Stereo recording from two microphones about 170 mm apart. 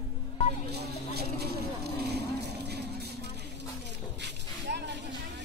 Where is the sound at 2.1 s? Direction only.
75° right (ahead or behind).